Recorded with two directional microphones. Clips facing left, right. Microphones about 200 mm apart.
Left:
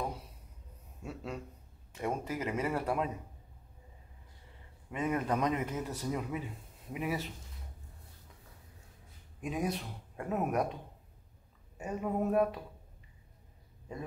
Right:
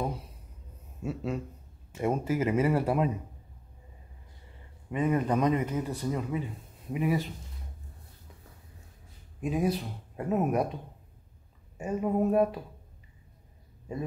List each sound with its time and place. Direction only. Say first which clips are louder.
1.0 s speech: right 8 dB; 5° right (ahead or behind)
4.9 s speech: right 5 dB; centre (ahead or behind)
9.4 s speech: right 6 dB; 5° right (ahead or behind)
12.0 s speech: right 5 dB; 15° right (ahead or behind)